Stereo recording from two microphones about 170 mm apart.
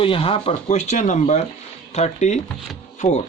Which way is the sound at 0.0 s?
30° left (ahead or behind).